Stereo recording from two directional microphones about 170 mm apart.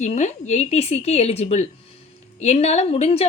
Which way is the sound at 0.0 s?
45° left (ahead or behind).